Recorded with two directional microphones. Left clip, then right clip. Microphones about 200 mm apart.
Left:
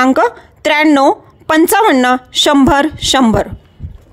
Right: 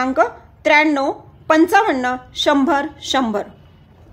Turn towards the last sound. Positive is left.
turn(degrees=45)  # may be behind; listen again after turning